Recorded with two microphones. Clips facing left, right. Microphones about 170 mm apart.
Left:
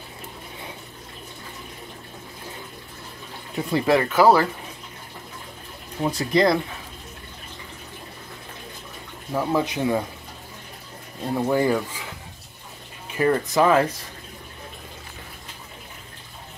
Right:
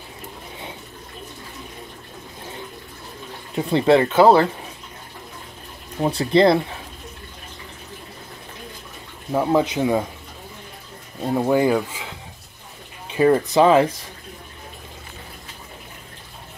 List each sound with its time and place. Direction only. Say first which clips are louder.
3.7 s speech: right 4 dB; 25° right (ahead or behind)
6.0 s speech: right 4 dB; 30° right (ahead or behind)
9.3 s speech: right 4 dB; 25° right (ahead or behind)
11.3 s speech: right 3 dB; 15° right (ahead or behind)
13.1 s speech: right 5 dB; 25° right (ahead or behind)